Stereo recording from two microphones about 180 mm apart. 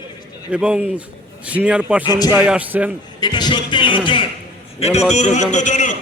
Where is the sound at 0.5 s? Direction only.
5° right (ahead or behind).